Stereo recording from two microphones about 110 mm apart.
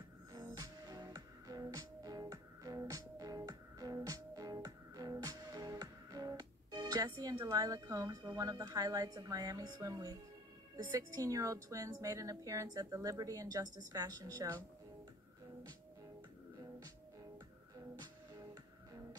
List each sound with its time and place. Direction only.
0.3 s music: 35° right (ahead or behind)
10.9 s a woman's voice: 30° right (ahead or behind)
17.9 s music: 40° right (ahead or behind)